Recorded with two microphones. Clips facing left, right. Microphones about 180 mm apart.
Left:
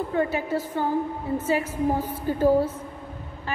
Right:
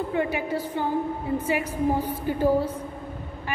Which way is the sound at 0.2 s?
15° right (ahead or behind).